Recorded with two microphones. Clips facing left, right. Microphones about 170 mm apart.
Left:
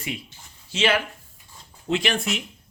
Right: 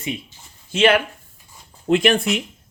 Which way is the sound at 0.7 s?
55° right (ahead or behind).